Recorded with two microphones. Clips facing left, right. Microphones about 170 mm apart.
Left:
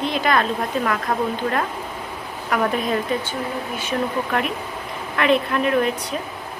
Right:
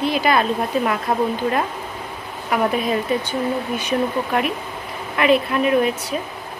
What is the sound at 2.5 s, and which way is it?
Speech, 10° right (ahead or behind).